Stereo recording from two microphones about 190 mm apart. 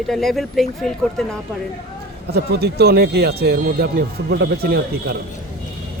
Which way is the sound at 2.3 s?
60° right (ahead or behind).